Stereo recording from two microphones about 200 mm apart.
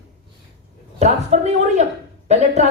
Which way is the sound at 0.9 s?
35° right (ahead or behind).